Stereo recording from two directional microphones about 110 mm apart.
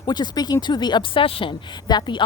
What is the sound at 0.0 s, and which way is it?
Speech, 40° left (ahead or behind).